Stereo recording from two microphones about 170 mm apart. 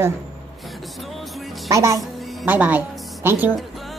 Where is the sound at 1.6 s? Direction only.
20° right (ahead or behind).